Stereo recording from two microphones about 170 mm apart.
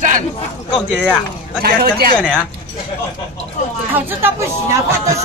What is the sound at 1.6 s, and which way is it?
Speech, 60° right (ahead or behind).